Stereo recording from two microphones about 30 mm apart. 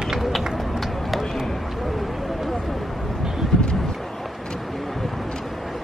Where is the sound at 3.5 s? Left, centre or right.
Centre.